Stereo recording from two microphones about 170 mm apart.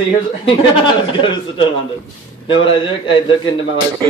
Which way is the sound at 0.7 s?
30° left (ahead or behind).